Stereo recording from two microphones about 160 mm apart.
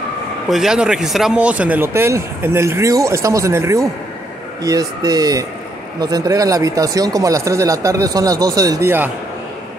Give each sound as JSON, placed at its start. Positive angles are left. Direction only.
{"t": 0.5, "sound": "speech", "side_deg": -5}